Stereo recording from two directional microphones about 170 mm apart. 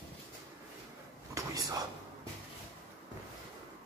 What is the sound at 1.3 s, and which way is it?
Whispering, 20° right (ahead or behind).